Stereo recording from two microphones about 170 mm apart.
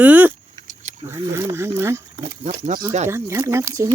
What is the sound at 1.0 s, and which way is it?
Speech, 15° right (ahead or behind).